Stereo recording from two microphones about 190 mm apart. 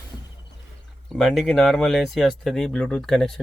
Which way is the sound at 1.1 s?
Centre (ahead or behind).